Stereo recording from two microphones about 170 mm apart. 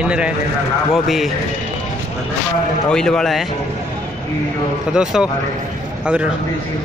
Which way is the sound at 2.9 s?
5° left (ahead or behind).